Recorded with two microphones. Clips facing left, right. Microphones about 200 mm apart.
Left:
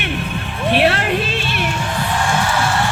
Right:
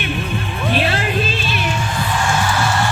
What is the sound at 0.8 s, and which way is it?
Music, 65° left (ahead or behind).